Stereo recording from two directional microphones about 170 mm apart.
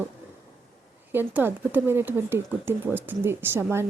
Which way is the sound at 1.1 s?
10° right (ahead or behind).